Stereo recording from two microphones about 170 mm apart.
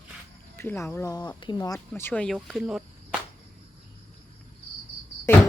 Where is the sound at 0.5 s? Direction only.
15° left (ahead or behind).